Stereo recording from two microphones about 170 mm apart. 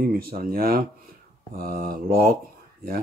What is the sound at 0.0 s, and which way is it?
Speech, 60° right (ahead or behind).